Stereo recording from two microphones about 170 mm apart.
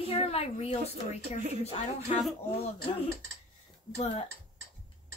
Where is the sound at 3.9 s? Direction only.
35° left (ahead or behind).